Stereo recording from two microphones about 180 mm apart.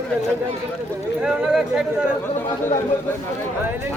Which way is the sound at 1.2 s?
5° right (ahead or behind).